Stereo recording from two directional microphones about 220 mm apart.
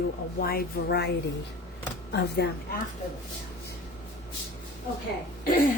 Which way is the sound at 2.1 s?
50° left (ahead or behind).